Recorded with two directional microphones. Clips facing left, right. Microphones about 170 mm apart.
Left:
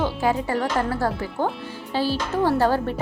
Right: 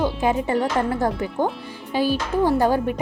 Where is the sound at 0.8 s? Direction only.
20° right (ahead or behind).